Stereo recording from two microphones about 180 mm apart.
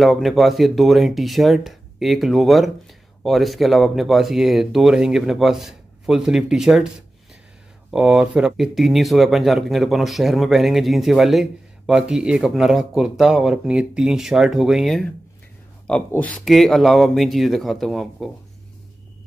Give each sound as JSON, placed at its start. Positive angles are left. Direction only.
{"t": 0.0, "sound": "speech", "side_deg": 0}
{"t": 7.9, "sound": "speech", "side_deg": -5}